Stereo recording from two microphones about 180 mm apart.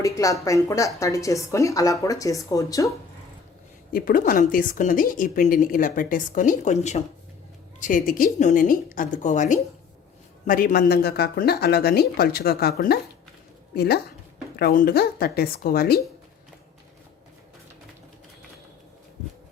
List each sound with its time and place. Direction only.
0.0 s speech: 20° left (ahead or behind)
3.9 s a woman's voice: 50° left (ahead or behind)